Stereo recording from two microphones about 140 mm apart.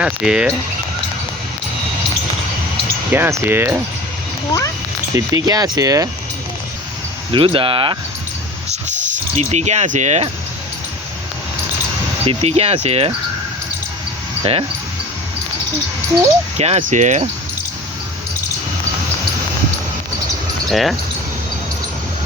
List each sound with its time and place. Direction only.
0.0 s speech: 5° right (ahead or behind)
3.1 s speech: 15° right (ahead or behind)
5.1 s speech: 25° right (ahead or behind)
7.3 s speech: 40° right (ahead or behind)
8.7 s a sound: 60° right (ahead or behind)
12.2 s speech: 45° right (ahead or behind)
14.4 s speech: 45° right (ahead or behind)
16.6 s speech: 50° right (ahead or behind)
20.7 s speech: centre (ahead or behind)